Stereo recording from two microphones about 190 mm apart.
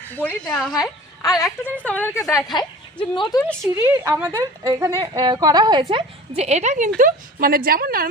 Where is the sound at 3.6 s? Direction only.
15° right (ahead or behind).